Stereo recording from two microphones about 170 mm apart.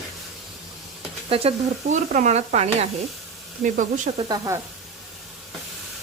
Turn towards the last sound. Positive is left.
turn(degrees=-20)  # may be behind; listen again after turning